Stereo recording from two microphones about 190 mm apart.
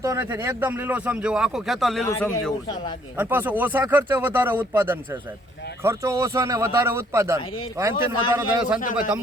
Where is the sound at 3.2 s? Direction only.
10° right (ahead or behind).